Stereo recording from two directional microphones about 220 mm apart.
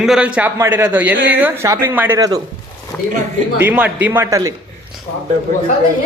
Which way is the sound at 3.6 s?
10° right (ahead or behind).